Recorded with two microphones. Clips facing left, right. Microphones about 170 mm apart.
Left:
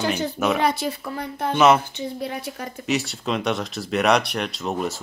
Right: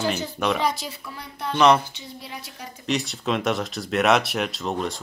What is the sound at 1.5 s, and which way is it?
Speech, 5° left (ahead or behind).